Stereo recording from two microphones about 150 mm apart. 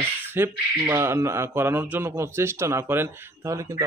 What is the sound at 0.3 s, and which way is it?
A man's voice, 15° right (ahead or behind).